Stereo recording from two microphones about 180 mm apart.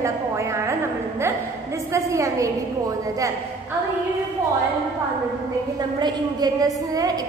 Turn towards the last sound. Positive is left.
turn(degrees=-20)  # may be behind; listen again after turning